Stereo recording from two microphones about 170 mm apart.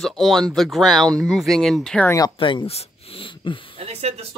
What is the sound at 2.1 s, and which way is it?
Speech, 25° left (ahead or behind).